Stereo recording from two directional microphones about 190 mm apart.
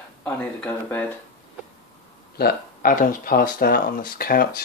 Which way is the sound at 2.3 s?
50° left (ahead or behind).